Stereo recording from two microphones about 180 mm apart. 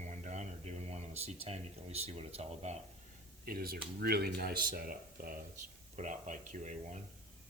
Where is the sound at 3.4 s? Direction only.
55° right (ahead or behind).